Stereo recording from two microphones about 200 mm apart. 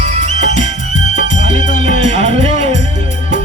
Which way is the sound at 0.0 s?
35° right (ahead or behind).